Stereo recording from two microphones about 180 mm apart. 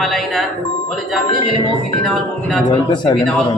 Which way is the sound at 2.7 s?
25° left (ahead or behind).